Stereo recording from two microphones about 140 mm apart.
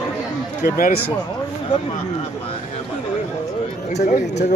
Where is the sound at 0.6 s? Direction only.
90° left.